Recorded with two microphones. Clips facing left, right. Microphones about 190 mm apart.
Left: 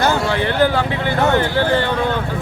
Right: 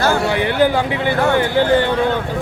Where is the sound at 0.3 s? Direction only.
15° right (ahead or behind).